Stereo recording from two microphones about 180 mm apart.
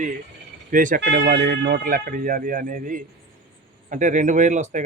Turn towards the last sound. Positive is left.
turn(degrees=-40)  # may be behind; listen again after turning